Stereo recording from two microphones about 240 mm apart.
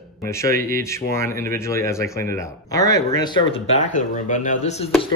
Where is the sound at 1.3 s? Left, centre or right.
Right.